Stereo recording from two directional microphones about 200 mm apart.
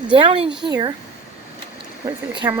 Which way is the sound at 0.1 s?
25° right (ahead or behind).